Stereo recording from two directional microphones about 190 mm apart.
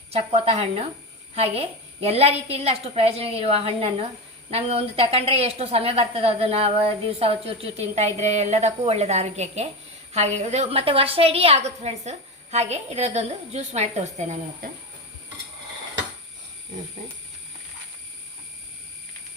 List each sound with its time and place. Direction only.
0.1 s a woman's voice: 35° right (ahead or behind)